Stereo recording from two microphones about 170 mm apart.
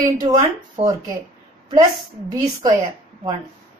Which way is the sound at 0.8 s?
40° right (ahead or behind).